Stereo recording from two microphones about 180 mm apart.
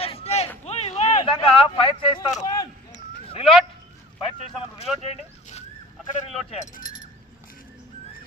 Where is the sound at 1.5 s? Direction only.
30° left (ahead or behind).